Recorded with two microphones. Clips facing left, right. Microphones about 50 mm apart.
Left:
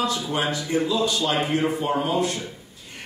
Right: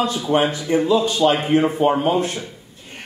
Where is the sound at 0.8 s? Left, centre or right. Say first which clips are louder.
Right 9 dB; right.